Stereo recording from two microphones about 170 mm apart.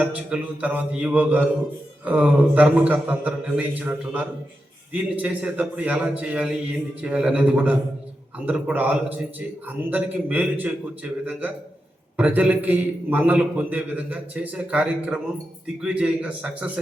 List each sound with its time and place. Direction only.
0.0 s a man's voice: 5° right (ahead or behind)